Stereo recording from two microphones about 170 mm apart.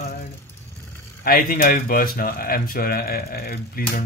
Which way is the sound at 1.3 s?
55° left (ahead or behind).